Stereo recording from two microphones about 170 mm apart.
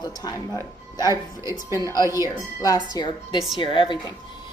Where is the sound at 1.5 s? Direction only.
20° left (ahead or behind).